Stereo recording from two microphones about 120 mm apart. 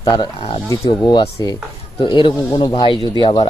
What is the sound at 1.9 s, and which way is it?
Speech, 45° left (ahead or behind).